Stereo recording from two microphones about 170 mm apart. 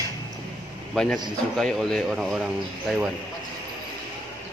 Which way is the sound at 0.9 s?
5° left (ahead or behind).